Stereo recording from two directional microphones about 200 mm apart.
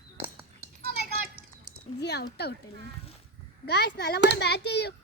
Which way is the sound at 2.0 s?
55° left (ahead or behind).